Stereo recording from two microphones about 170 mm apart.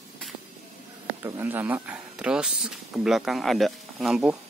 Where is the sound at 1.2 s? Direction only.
15° right (ahead or behind).